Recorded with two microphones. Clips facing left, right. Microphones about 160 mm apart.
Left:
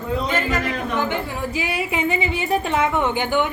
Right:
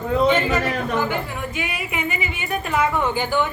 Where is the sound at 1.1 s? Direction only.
30° left (ahead or behind).